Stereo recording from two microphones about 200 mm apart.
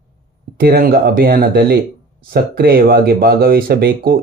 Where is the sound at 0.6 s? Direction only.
50° right (ahead or behind).